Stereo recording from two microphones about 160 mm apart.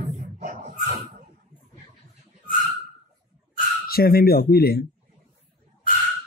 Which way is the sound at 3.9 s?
70° left (ahead or behind).